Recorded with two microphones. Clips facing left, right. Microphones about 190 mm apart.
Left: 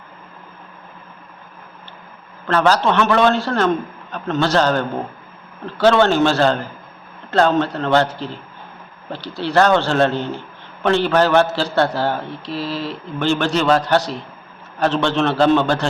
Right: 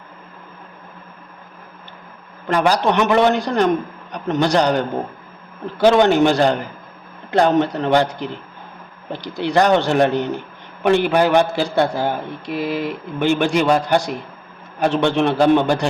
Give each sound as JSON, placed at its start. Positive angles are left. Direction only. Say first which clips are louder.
{"t": 2.5, "sound": "a man's voice", "louder": "left 1 dB", "side_deg": -15}